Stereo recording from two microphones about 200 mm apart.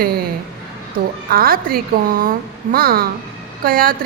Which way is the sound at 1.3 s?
45° right (ahead or behind).